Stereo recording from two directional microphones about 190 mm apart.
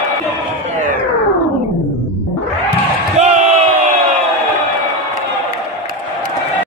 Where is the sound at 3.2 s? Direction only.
40° right (ahead or behind).